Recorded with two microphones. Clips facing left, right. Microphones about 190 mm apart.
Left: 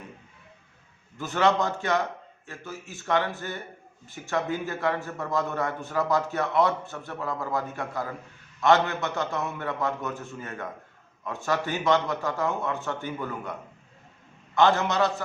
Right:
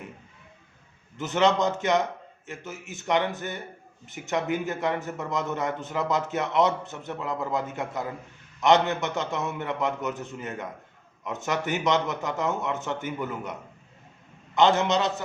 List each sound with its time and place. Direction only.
1.2 s a man's voice: 20° right (ahead or behind)